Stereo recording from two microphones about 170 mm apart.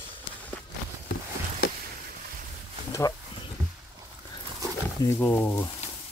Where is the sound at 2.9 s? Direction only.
20° left (ahead or behind).